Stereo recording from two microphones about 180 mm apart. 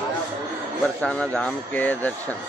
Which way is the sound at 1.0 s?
5° left (ahead or behind).